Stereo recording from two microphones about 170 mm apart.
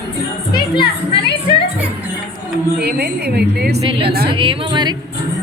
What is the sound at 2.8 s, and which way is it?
Speech, 75° right (ahead or behind).